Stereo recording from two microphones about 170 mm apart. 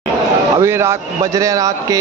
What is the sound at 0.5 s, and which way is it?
A man's voice, 15° right (ahead or behind).